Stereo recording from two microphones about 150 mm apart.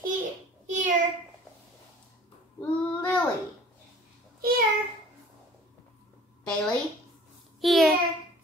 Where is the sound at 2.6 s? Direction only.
10° left (ahead or behind).